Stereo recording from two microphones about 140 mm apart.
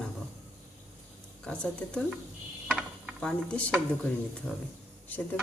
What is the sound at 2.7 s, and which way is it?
Pulleys, centre (ahead or behind).